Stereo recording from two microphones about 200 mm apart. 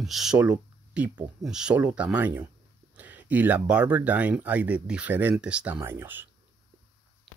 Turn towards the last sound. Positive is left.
turn(degrees=-10)  # may be behind; listen again after turning